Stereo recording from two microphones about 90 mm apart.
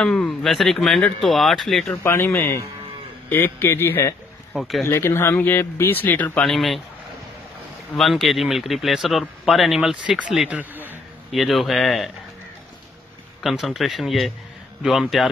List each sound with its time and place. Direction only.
0.0 s speech: 5° left (ahead or behind)
2.0 s speech: 30° left (ahead or behind)
4.6 s speech: centre (ahead or behind)
4.8 s speech: 25° left (ahead or behind)
6.4 s speech: centre (ahead or behind)
8.0 s speech: centre (ahead or behind)
13.4 s speech: centre (ahead or behind)